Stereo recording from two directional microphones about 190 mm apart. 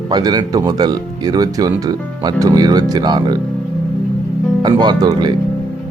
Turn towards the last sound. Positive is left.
turn(degrees=-25)  # may be behind; listen again after turning